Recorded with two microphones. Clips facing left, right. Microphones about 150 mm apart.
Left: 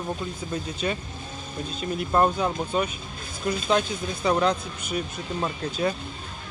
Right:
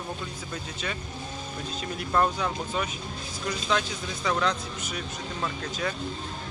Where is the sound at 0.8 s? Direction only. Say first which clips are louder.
Left 7 dB; 35° left (ahead or behind).